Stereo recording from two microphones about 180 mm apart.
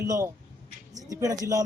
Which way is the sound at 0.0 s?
15° right (ahead or behind).